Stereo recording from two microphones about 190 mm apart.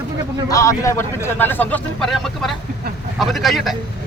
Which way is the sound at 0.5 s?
15° left (ahead or behind).